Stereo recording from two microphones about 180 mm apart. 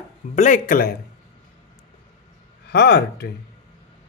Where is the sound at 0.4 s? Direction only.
45° left (ahead or behind).